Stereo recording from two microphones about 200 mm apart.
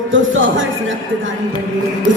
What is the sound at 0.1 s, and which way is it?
Speech, 75° right (ahead or behind).